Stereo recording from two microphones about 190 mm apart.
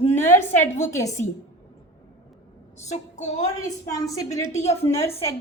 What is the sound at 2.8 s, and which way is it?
Child singing, 35° left (ahead or behind).